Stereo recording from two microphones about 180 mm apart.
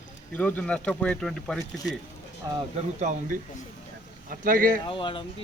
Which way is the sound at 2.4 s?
20° right (ahead or behind).